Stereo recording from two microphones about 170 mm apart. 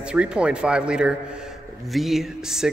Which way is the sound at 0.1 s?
5° right (ahead or behind).